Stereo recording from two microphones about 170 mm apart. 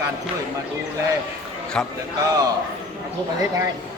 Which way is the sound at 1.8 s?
5° left (ahead or behind).